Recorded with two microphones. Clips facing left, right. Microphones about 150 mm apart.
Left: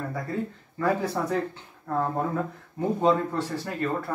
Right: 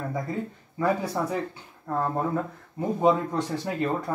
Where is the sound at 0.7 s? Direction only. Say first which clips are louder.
Even; 10° right (ahead or behind).